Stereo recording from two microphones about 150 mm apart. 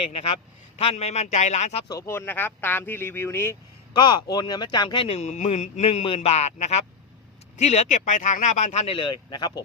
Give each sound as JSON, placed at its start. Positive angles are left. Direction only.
{"t": 0.1, "sound": "speech", "side_deg": 40}
{"t": 1.9, "sound": "speech", "side_deg": 20}
{"t": 3.9, "sound": "speech", "side_deg": 30}